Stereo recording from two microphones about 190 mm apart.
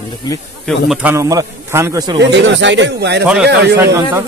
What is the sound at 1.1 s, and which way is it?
Speech, 15° right (ahead or behind).